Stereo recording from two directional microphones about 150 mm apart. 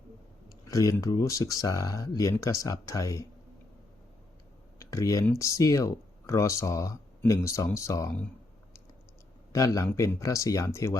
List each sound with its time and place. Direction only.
0.7 s speech: 20° left (ahead or behind)
4.8 s speech: 20° left (ahead or behind)
9.5 s speech: 20° left (ahead or behind)